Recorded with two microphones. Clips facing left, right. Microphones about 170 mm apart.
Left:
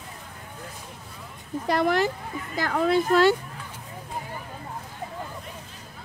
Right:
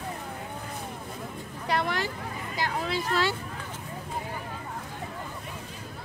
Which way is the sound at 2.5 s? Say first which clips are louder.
Left 8 dB; 50° left (ahead or behind).